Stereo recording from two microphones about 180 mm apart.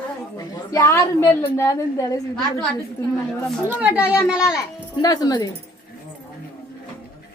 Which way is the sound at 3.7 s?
10° right (ahead or behind).